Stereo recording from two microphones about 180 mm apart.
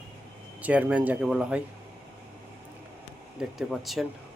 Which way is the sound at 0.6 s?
10° right (ahead or behind).